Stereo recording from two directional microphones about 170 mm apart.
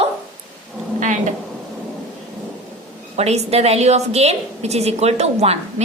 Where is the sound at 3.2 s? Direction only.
40° right (ahead or behind).